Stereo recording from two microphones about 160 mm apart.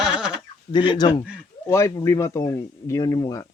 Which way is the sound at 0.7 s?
30° left (ahead or behind).